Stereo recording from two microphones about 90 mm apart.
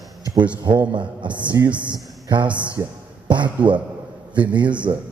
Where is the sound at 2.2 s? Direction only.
60° right (ahead or behind).